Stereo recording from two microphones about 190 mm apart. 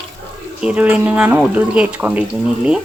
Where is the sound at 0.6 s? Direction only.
5° right (ahead or behind).